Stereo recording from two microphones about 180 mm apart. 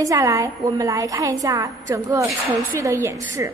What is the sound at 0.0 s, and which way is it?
A woman's voice, 20° right (ahead or behind).